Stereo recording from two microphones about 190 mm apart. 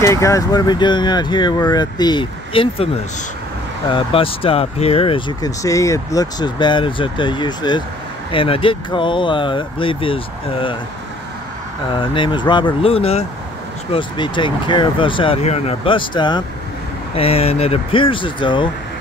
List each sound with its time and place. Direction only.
0.0 s speech: 15° left (ahead or behind)
3.9 s speech: 30° left (ahead or behind)
11.9 s speech: 25° left (ahead or behind)